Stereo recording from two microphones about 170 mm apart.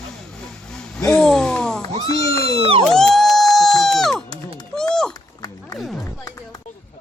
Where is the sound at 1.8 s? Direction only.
20° left (ahead or behind).